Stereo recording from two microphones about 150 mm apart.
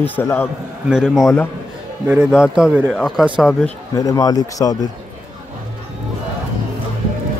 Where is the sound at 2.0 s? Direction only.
5° right (ahead or behind).